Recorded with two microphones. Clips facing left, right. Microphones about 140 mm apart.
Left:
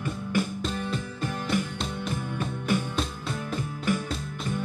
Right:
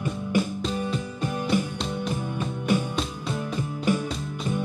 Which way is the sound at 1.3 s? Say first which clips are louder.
Right 4 dB; 20° right (ahead or behind).